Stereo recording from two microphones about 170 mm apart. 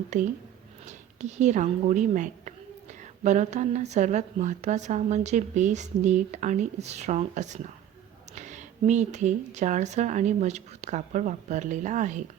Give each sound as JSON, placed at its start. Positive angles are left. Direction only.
{"t": 0.1, "sound": "speech", "side_deg": -45}